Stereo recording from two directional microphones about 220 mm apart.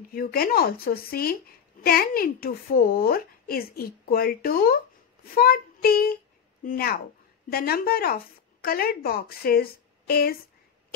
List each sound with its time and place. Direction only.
0.1 s a woman's voice: 40° left (ahead or behind)